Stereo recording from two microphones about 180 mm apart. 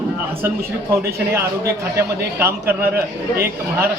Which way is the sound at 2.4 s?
15° right (ahead or behind).